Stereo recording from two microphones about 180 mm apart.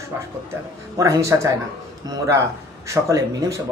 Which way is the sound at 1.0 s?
15° right (ahead or behind).